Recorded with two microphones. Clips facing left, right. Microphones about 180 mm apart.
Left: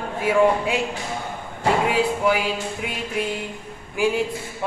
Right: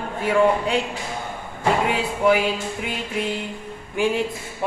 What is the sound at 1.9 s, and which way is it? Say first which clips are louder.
Speech: right 1 dB; centre (ahead or behind).